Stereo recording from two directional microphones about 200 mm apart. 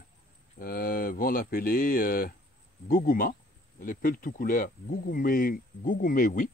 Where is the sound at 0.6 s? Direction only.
45° left (ahead or behind).